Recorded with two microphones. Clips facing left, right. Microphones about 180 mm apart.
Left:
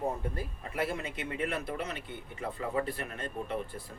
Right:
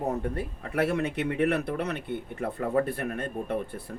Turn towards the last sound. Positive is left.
turn(degrees=-55)  # may be behind; listen again after turning